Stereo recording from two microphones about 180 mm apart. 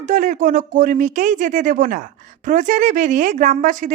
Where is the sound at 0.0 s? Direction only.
45° right (ahead or behind).